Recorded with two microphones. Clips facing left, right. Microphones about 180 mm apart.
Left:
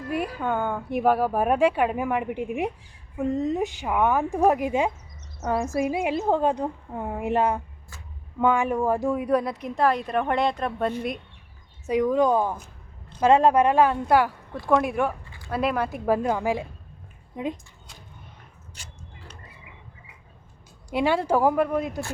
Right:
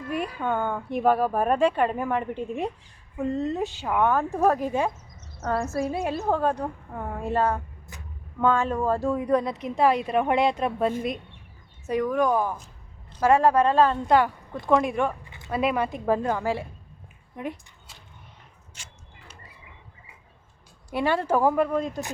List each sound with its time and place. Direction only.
0.1 s a woman's voice: 5° left (ahead or behind)
11.9 s a woman's voice: 20° left (ahead or behind)
15.2 s a sound: 20° right (ahead or behind)
15.4 s a woman's voice: centre (ahead or behind); by 17.6 s 20° left (ahead or behind)
18.8 s a sound: 35° left (ahead or behind)
20.9 s a woman's voice: 10° left (ahead or behind)